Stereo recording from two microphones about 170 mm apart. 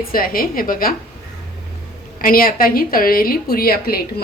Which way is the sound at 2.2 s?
60° left (ahead or behind).